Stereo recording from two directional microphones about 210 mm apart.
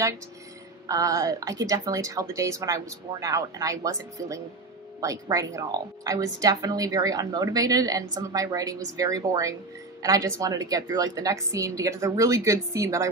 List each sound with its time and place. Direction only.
0.8 s a woman's voice: 15° right (ahead or behind)